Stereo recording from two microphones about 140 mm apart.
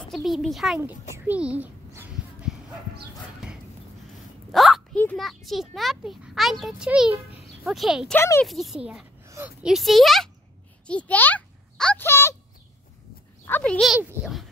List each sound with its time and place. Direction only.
0.1 s a child's voice: centre (ahead or behind)
1.1 s a child's voice: 10° right (ahead or behind)
4.5 s a sound: centre (ahead or behind)
5.1 s a child's voice: centre (ahead or behind)
8.1 s speech: 15° left (ahead or behind)
8.5 s a child's voice: centre (ahead or behind)
9.2 s a sound: 20° right (ahead or behind)
9.6 s a child's voice: 5° right (ahead or behind)
10.9 s a sound: 10° left (ahead or behind)
13.5 s a child's voice: 10° left (ahead or behind)